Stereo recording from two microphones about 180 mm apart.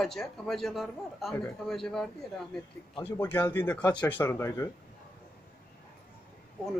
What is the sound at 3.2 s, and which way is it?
Speech, 10° left (ahead or behind).